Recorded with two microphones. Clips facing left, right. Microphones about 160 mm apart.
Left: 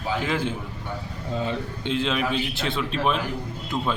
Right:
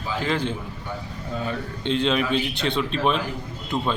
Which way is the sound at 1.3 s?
20° left (ahead or behind).